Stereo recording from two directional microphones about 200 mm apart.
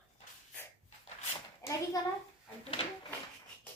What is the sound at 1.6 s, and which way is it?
Hands, 15° left (ahead or behind).